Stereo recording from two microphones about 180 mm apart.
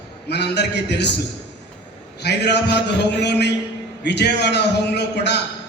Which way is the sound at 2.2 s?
65° left (ahead or behind).